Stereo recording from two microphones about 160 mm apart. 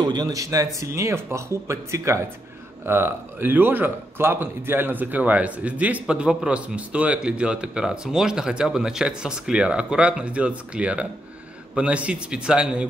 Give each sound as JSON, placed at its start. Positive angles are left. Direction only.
{"t": 0.0, "sound": "a man's voice", "side_deg": -25}